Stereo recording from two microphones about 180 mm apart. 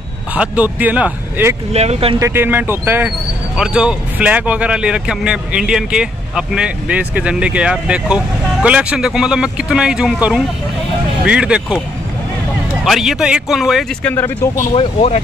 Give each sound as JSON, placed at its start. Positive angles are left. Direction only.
{"t": 0.3, "sound": "a man's voice", "side_deg": -10}
{"t": 1.7, "sound": "speech", "side_deg": -35}
{"t": 2.1, "sound": "a man's voice", "side_deg": -15}
{"t": 12.8, "sound": "speech", "side_deg": 0}
{"t": 14.1, "sound": "speech", "side_deg": 10}
{"t": 14.6, "sound": "speech", "side_deg": 35}